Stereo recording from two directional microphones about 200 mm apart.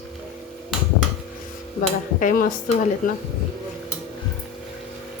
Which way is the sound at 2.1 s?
40° left (ahead or behind).